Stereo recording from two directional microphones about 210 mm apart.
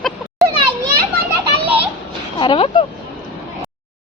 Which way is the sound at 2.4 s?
25° left (ahead or behind).